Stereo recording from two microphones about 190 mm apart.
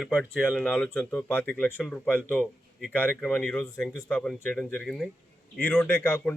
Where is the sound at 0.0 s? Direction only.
5° right (ahead or behind).